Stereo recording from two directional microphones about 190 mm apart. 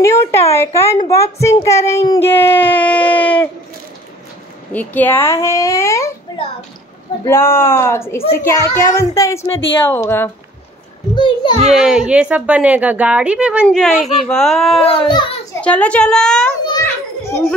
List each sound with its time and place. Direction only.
0.0 s a child's voice: 15° left (ahead or behind)
4.7 s a child's voice: 10° left (ahead or behind)
7.2 s a child's voice: 15° left (ahead or behind)
11.1 s a child's voice: 25° left (ahead or behind)
11.7 s a woman's voice: 5° right (ahead or behind)
14.8 s a child's voice: 30° left (ahead or behind)
15.5 s speech: 5° left (ahead or behind)
16.8 s children playing: 15° left (ahead or behind)